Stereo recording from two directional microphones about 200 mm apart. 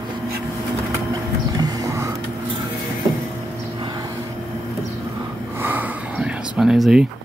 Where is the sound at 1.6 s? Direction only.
20° right (ahead or behind).